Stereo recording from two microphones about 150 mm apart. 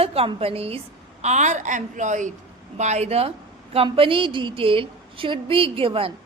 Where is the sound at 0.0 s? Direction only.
40° right (ahead or behind).